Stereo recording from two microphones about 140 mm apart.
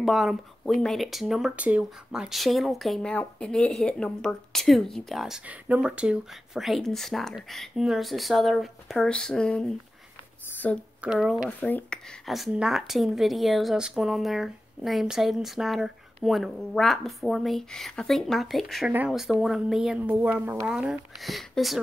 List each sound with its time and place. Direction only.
0.0 s speech: centre (ahead or behind)
11.0 s speech: 5° right (ahead or behind)
11.6 s speech: 10° left (ahead or behind)
12.3 s speech: centre (ahead or behind)